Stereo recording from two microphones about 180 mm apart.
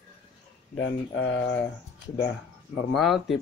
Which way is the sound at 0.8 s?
90° left.